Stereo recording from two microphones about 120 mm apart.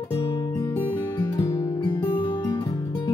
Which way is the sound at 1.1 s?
25° left (ahead or behind).